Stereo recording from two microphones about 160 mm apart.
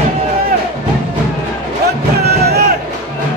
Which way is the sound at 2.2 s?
85° right.